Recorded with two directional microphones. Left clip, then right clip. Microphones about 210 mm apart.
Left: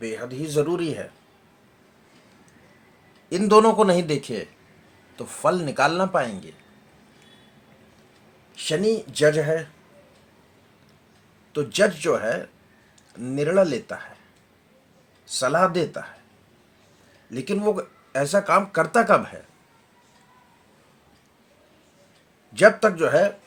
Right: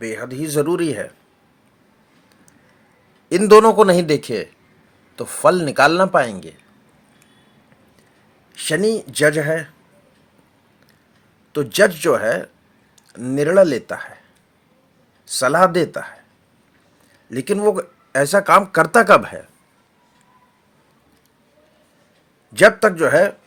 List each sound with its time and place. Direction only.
0.0 s speech: 40° right (ahead or behind)
3.2 s speech: 45° right (ahead or behind)
8.5 s speech: 40° right (ahead or behind)
11.5 s speech: 40° right (ahead or behind)
15.3 s speech: 40° right (ahead or behind)
17.2 s speech: 40° right (ahead or behind)
22.5 s speech: 40° right (ahead or behind)